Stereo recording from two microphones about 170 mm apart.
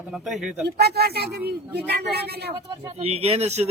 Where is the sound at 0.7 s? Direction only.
70° right (ahead or behind).